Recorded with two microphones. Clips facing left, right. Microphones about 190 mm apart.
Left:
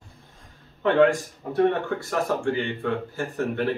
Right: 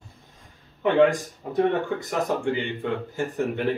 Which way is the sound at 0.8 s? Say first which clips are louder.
Even; 15° right (ahead or behind).